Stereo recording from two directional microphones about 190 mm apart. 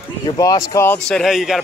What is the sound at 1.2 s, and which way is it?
Speech, centre (ahead or behind).